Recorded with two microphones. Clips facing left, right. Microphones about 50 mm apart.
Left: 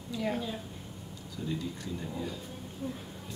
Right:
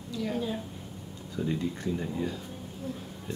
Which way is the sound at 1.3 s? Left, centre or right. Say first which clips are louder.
Right 5 dB; right.